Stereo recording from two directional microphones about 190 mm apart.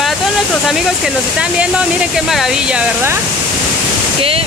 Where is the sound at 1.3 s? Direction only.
5° right (ahead or behind).